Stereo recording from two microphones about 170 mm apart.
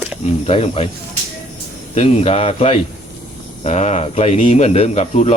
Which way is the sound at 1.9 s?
40° left (ahead or behind).